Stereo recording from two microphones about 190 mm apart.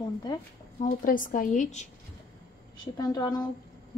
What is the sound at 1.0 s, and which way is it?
Speech, 45° left (ahead or behind).